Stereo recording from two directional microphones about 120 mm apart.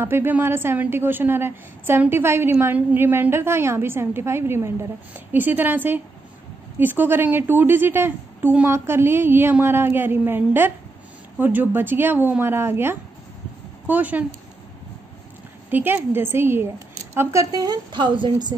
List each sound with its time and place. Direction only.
0.0 s a woman's voice: 20° right (ahead or behind)
15.7 s a woman's voice: 15° right (ahead or behind); by 18.5 s 40° right (ahead or behind)